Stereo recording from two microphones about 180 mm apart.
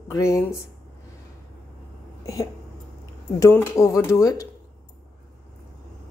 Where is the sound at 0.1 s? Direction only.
15° left (ahead or behind).